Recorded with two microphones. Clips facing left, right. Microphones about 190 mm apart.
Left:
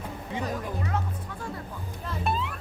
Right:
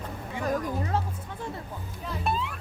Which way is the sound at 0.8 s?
30° right (ahead or behind).